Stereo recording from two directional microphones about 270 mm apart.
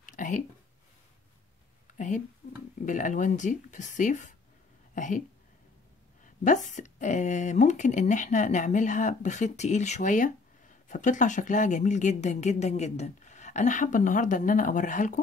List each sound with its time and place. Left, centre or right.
0.0 s a sound: left
2.0 s speech: left
6.2 s speech: left